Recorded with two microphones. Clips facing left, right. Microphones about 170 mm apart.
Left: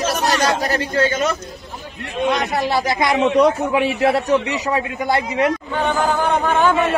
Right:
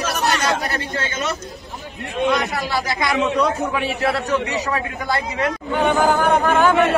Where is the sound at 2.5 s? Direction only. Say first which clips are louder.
Left 4 dB; 20° left (ahead or behind).